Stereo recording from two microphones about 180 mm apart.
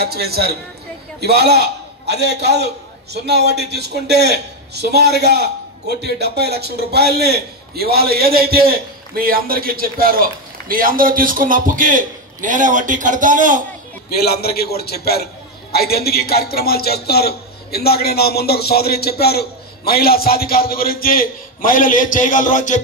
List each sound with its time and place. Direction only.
0.0 s a man's voice: 60° right (ahead or behind)
14.1 s a man's voice: 60° left (ahead or behind); by 22.8 s 45° left (ahead or behind)